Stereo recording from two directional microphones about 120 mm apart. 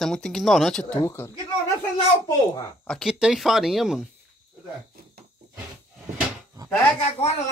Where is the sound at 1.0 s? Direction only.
20° left (ahead or behind).